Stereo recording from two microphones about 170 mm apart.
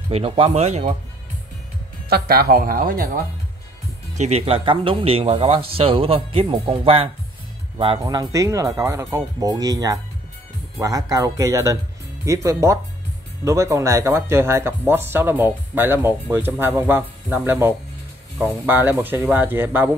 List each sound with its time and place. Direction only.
0.1 s speech: 35° right (ahead or behind)
2.0 s speech: 65° right (ahead or behind)
4.1 s speech: 40° right (ahead or behind); by 19.9 s 10° right (ahead or behind)